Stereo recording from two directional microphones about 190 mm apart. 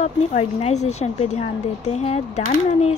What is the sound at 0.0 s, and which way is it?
Speech, 35° left (ahead or behind).